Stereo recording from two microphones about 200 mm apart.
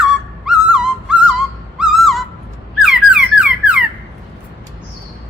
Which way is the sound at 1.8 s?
Centre (ahead or behind).